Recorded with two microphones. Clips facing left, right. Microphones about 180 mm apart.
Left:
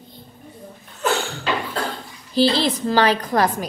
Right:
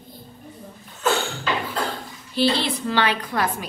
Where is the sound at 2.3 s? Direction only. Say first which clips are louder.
Left 4 dB; 35° left (ahead or behind).